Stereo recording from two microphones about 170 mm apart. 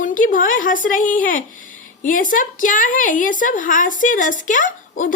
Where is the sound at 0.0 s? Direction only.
50° left (ahead or behind).